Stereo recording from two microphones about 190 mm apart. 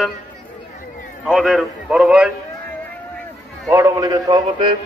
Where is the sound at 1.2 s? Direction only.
Centre (ahead or behind).